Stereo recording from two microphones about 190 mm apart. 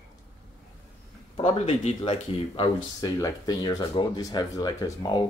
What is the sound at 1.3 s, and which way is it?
Speech, 30° left (ahead or behind).